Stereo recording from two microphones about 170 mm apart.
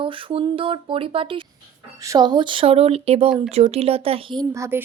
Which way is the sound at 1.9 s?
20° right (ahead or behind).